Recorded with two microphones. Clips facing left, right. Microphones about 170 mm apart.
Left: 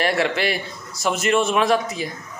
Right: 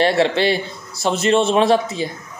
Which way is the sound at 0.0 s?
30° right (ahead or behind).